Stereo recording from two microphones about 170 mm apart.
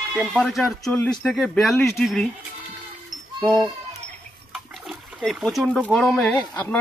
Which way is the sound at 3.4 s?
Centre (ahead or behind).